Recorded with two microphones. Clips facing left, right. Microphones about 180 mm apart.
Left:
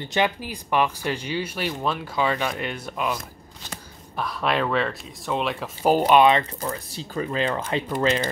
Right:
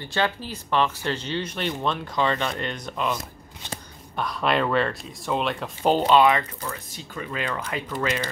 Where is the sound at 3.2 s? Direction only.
25° right (ahead or behind).